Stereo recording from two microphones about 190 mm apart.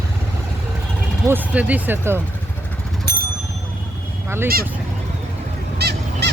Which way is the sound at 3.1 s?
55° right (ahead or behind).